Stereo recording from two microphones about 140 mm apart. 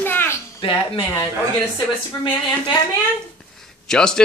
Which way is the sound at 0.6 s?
40° left (ahead or behind).